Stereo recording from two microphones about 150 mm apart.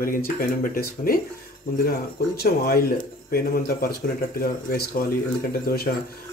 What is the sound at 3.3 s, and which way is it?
Speech, 75° left (ahead or behind).